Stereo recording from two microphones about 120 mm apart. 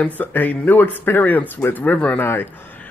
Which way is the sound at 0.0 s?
15° left (ahead or behind).